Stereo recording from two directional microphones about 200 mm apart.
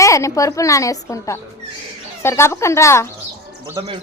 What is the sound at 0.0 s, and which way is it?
A woman's voice, 15° left (ahead or behind).